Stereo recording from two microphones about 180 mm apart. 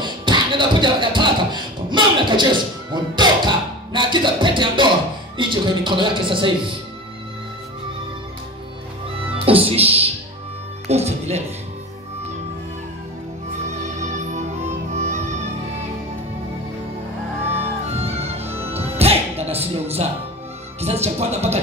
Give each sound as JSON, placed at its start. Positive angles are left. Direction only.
{"t": 0.0, "sound": "beatboxing", "side_deg": -25}
{"t": 5.4, "sound": "a man's voice", "side_deg": -25}
{"t": 9.5, "sound": "speech", "side_deg": -30}
{"t": 13.7, "sound": "music", "side_deg": -40}
{"t": 17.9, "sound": "music", "side_deg": -35}
{"t": 20.8, "sound": "speech", "side_deg": -35}